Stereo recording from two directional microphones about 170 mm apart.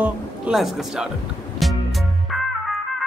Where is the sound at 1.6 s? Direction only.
Centre (ahead or behind).